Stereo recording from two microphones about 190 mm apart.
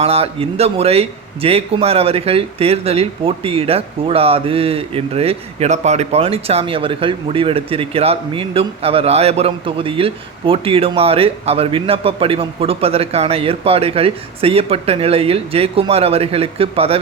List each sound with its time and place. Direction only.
0.0 s a man's voice: 30° right (ahead or behind)